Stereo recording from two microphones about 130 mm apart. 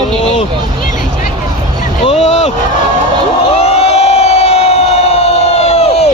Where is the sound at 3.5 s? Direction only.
55° left (ahead or behind).